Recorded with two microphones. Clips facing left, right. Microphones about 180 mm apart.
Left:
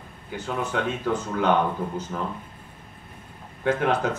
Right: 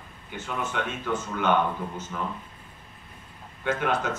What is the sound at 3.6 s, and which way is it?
Speech, 35° left (ahead or behind).